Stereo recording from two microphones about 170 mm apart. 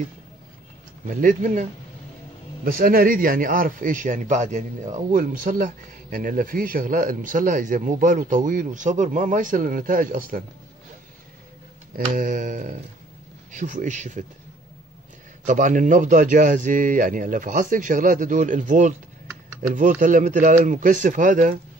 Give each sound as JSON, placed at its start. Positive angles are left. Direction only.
{"t": 1.0, "sound": "a man's voice", "side_deg": -50}
{"t": 2.6, "sound": "a man's voice", "side_deg": -60}
{"t": 11.9, "sound": "a man's voice", "side_deg": -50}
{"t": 15.4, "sound": "a man's voice", "side_deg": -50}